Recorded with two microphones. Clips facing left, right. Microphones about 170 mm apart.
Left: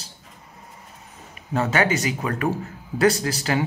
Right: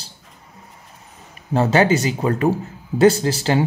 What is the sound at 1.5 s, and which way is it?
Speech, 30° right (ahead or behind).